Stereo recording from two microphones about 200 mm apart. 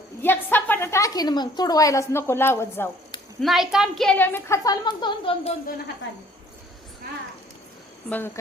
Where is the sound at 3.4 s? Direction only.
Centre (ahead or behind); by 5.5 s 30° left (ahead or behind).